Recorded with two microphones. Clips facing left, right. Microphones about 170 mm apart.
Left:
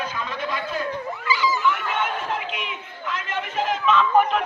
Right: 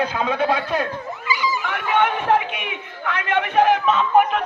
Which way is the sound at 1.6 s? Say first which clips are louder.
Right 3 dB; 60° right (ahead or behind).